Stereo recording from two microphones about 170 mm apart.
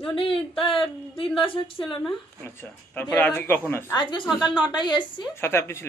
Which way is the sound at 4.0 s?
25° left (ahead or behind).